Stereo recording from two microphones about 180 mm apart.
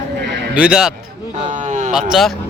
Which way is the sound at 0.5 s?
5° right (ahead or behind).